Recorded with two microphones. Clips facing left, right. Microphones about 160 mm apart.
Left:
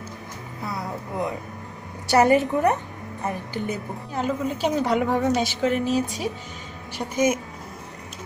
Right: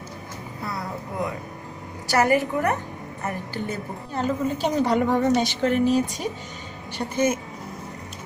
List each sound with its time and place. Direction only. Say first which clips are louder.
0.7 s music: left 1 dB; 20° left (ahead or behind)
2.0 s a woman's voice: left 3 dB; 20° left (ahead or behind)
4.1 s a woman's voice: right 1 dB; 5° left (ahead or behind)